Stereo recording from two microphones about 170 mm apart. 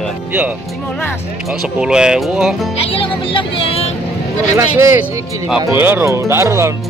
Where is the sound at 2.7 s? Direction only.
35° left (ahead or behind).